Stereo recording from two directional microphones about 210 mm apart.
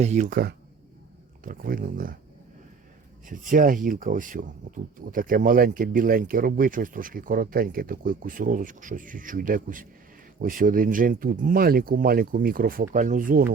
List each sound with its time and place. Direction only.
0.0 s speech: 35° right (ahead or behind)
3.2 s speech: 40° right (ahead or behind)